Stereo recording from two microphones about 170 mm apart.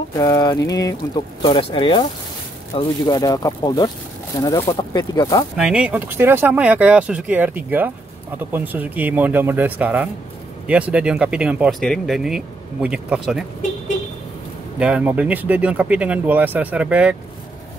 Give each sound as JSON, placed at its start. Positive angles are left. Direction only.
{"t": 0.1, "sound": "speech", "side_deg": 20}
{"t": 5.6, "sound": "speech", "side_deg": -5}
{"t": 14.8, "sound": "speech", "side_deg": -5}